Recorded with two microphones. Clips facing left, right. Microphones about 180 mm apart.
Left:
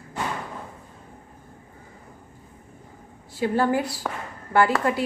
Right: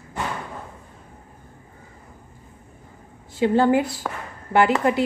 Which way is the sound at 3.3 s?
25° right (ahead or behind).